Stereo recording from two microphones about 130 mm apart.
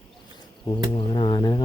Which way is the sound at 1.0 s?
40° left (ahead or behind).